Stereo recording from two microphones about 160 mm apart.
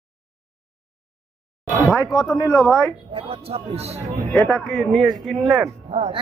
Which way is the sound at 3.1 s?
35° right (ahead or behind).